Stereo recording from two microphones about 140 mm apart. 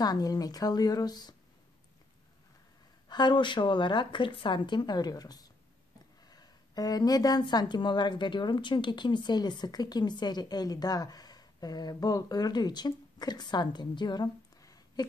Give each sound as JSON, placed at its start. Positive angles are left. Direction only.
{"t": 0.0, "sound": "a woman's voice", "side_deg": 25}
{"t": 3.1, "sound": "a woman's voice", "side_deg": 30}